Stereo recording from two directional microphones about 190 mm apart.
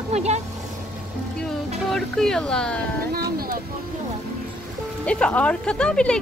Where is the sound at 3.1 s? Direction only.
50° right (ahead or behind).